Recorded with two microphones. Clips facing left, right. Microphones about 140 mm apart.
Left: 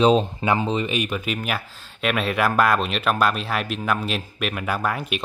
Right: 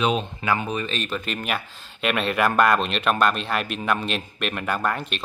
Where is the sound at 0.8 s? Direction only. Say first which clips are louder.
Left 3 dB; 15° left (ahead or behind).